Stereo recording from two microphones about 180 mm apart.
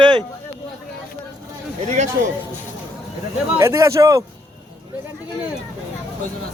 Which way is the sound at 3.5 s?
15° right (ahead or behind).